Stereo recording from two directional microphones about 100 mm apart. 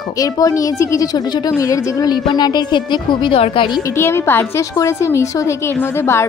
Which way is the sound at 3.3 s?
65° left (ahead or behind).